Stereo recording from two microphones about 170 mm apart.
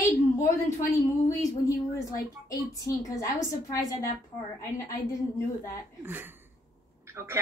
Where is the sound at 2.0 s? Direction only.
20° left (ahead or behind).